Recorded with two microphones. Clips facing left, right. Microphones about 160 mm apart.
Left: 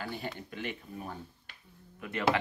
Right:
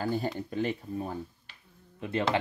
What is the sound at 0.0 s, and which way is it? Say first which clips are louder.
Speech: right 8 dB; 40° right (ahead or behind).